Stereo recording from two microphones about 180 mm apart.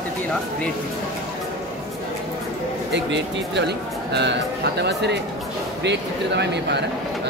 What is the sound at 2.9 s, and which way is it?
Speech, 75° right (ahead or behind).